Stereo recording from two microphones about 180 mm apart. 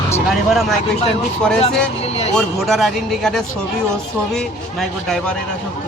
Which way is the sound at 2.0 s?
35° left (ahead or behind).